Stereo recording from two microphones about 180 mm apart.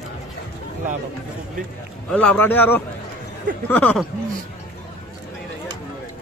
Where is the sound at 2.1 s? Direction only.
5° left (ahead or behind).